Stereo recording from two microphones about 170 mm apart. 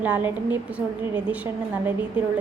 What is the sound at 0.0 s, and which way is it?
Speech, 10° right (ahead or behind).